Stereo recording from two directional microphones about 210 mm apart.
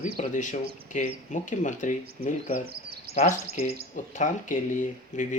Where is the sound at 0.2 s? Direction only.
35° left (ahead or behind).